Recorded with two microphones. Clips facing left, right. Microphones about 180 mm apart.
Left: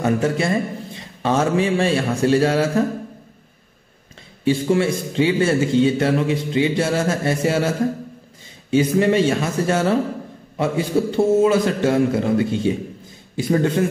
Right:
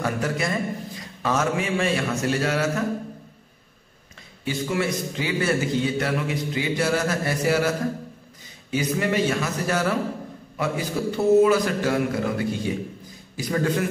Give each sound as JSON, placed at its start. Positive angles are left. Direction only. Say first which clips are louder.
{"t": 0.0, "sound": "a man's voice", "louder": "left 6 dB", "side_deg": 25}
{"t": 4.5, "sound": "a man's voice", "louder": "left 7 dB", "side_deg": 30}